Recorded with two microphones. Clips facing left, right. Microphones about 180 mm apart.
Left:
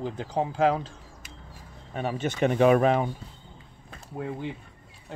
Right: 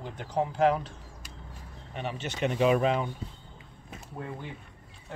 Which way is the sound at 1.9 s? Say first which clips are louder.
Left 6 dB; 45° left (ahead or behind).